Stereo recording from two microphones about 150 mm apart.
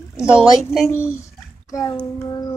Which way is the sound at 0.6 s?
Centre (ahead or behind).